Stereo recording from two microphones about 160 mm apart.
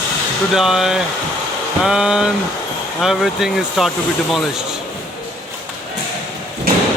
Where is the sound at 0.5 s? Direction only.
Centre (ahead or behind).